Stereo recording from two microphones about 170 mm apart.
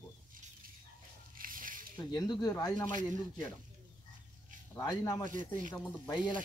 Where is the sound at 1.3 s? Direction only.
55° right (ahead or behind).